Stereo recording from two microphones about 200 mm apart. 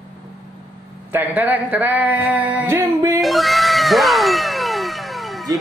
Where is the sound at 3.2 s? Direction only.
Centre (ahead or behind).